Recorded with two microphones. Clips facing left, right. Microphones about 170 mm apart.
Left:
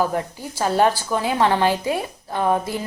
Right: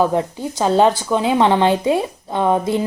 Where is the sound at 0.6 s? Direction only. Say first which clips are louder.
Right 4 dB; 20° right (ahead or behind).